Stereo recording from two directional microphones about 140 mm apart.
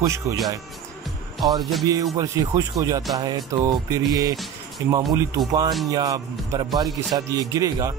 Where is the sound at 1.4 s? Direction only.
25° right (ahead or behind).